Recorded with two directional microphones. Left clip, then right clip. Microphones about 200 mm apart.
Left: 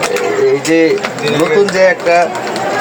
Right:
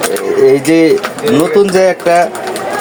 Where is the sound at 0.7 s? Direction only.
45° right (ahead or behind).